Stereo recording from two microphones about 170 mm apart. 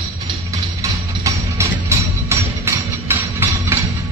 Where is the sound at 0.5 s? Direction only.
20° right (ahead or behind).